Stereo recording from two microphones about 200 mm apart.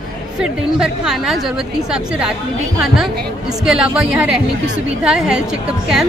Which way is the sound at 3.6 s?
Centre (ahead or behind).